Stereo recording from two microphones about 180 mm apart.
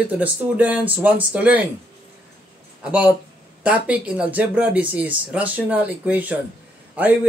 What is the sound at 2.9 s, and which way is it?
Speech, 10° right (ahead or behind).